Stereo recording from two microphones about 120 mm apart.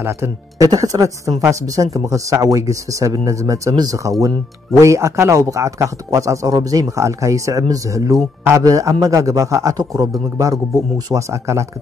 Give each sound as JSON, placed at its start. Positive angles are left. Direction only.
{"t": 0.0, "sound": "a man's voice", "side_deg": -20}